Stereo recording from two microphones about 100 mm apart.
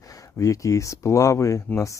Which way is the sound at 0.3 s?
30° left (ahead or behind).